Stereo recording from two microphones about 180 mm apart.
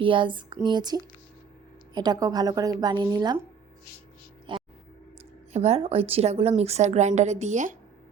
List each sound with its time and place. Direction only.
0.0 s a woman's voice: 30° right (ahead or behind)
4.5 s vehicle: 25° right (ahead or behind)
5.5 s a woman's voice: 35° right (ahead or behind)